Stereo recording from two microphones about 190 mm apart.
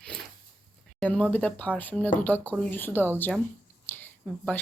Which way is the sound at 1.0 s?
5° left (ahead or behind).